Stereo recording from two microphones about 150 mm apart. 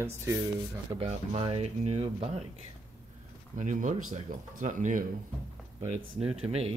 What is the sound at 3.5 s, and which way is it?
Speech, 55° right (ahead or behind).